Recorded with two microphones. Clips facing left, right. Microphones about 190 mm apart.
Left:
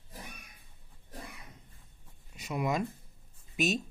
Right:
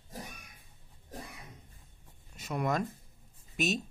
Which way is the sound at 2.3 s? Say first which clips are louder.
Even; centre (ahead or behind).